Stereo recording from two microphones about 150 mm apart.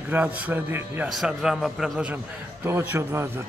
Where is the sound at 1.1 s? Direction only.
Centre (ahead or behind).